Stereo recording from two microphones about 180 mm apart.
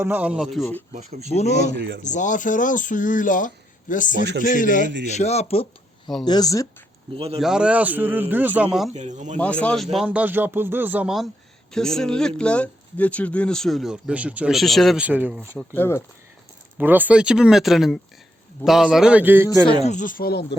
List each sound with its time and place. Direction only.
0.0 s speech: 10° right (ahead or behind)
0.9 s speech: 40° right (ahead or behind)
1.3 s speech: 35° left (ahead or behind)
1.7 s speech: 80° right
2.0 s speech: 45° left (ahead or behind)
5.1 s speech: 35° left (ahead or behind)
6.2 s speech: 20° left (ahead or behind)
7.2 s speech: 35° right (ahead or behind)
7.4 s speech: 5° right (ahead or behind)
8.9 s speech: 40° right (ahead or behind)
9.4 s speech: 5° left (ahead or behind); by 15.4 s 10° right (ahead or behind)
15.5 s speech: 10° left (ahead or behind)
16.7 s speech: 10° right (ahead or behind)
19.6 s speech: 40° left (ahead or behind); by 20.6 s 60° left (ahead or behind)